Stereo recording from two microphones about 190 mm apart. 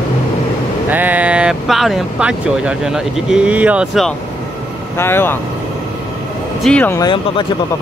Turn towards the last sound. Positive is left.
turn(degrees=25)  # may be behind; listen again after turning